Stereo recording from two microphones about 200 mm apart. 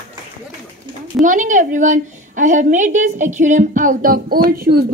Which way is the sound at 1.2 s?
40° right (ahead or behind).